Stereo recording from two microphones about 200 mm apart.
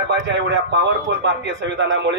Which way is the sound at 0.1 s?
60° right (ahead or behind).